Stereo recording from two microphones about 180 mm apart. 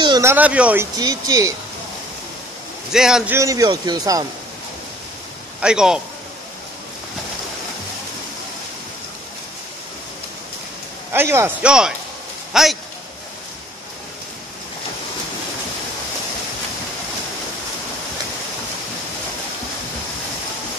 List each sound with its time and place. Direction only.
0.0 s a sound: 25° right (ahead or behind)
0.3 s a man's voice: 10° right (ahead or behind)
0.9 s speech: 20° right (ahead or behind)
2.9 s a man's voice: 5° right (ahead or behind)
3.3 s speech: 20° right (ahead or behind)
5.6 s a man's voice: 5° right (ahead or behind)
11.1 s a man's voice: 15° right (ahead or behind)